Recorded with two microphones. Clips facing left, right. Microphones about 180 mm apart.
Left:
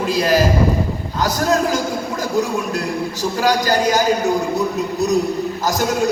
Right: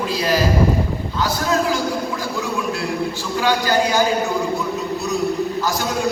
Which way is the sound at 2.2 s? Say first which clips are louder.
Left 4 dB; 45° left (ahead or behind).